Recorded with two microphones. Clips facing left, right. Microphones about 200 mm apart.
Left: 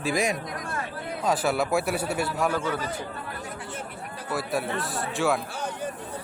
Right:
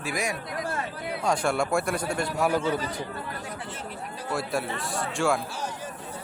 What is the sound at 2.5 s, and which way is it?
Speech, 15° right (ahead or behind).